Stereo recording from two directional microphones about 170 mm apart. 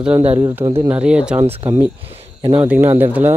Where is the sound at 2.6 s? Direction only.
10° right (ahead or behind).